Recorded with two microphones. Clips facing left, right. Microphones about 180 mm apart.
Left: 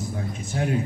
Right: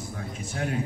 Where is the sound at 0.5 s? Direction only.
20° left (ahead or behind).